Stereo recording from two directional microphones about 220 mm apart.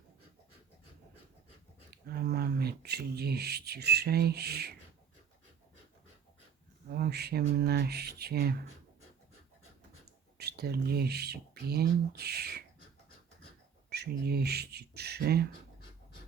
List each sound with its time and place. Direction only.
1.9 s speech: 45° right (ahead or behind)
6.9 s speech: 45° right (ahead or behind)
10.3 s speech: 45° right (ahead or behind)
13.9 s speech: 45° right (ahead or behind)